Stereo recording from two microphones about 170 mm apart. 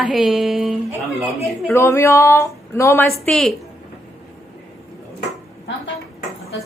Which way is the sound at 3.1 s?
Centre (ahead or behind).